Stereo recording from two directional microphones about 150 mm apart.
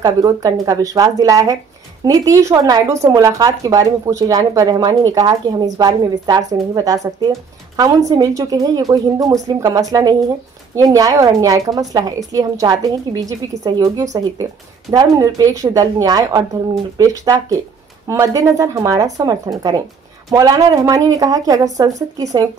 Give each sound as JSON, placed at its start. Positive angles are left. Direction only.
{"t": 0.0, "sound": "speech", "side_deg": -25}